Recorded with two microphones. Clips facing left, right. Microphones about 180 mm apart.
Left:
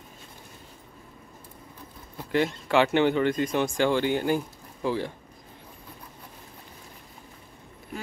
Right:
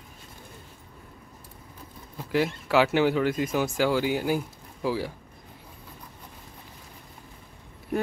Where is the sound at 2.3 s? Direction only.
5° right (ahead or behind).